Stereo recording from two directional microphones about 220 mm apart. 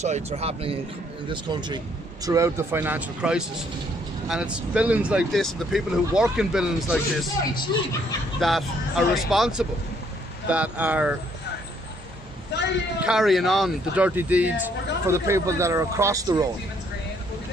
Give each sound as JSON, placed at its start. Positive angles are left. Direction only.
{"t": 0.0, "sound": "speech", "side_deg": -30}
{"t": 8.4, "sound": "speech", "side_deg": 0}
{"t": 12.5, "sound": "a man's voice", "side_deg": 50}
{"t": 13.0, "sound": "speech", "side_deg": 0}